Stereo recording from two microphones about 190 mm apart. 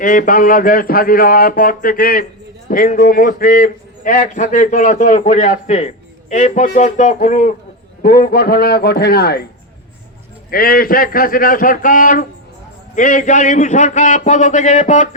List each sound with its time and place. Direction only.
0.0 s a man's voice: 45° left (ahead or behind)
10.5 s a man's voice: 50° left (ahead or behind)